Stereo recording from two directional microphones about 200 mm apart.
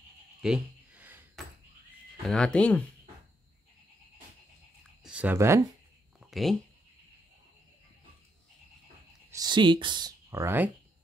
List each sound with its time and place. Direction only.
0.4 s a sound: 5° right (ahead or behind)
2.2 s speech: 5° left (ahead or behind)
5.0 s speech: 5° right (ahead or behind)
6.3 s speech: centre (ahead or behind)
9.3 s speech: 20° right (ahead or behind)